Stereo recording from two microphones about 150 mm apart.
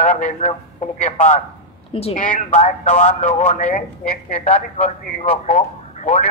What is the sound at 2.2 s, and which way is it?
Speech, 60° left (ahead or behind).